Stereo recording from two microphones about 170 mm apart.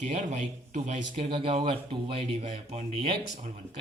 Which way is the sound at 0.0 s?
45° right (ahead or behind).